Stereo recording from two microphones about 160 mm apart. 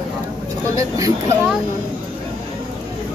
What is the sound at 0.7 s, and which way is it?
Speech, 20° right (ahead or behind).